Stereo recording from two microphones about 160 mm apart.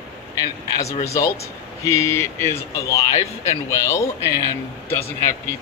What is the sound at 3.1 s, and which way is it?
Speech, 45° left (ahead or behind).